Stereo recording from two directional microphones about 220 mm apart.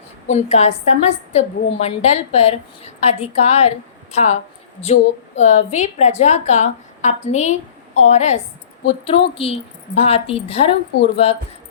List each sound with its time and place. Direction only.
0.3 s a woman's voice: 30° left (ahead or behind)